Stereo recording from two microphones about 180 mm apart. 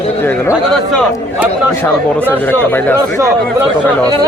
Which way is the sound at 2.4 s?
10° left (ahead or behind).